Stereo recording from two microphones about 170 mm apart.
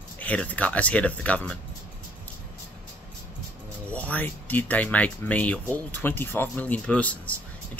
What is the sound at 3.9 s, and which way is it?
Speech, 10° left (ahead or behind).